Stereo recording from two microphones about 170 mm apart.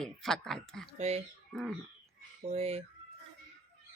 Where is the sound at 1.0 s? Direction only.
40° right (ahead or behind).